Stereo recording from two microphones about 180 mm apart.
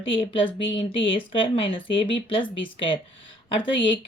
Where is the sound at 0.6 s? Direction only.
90° left.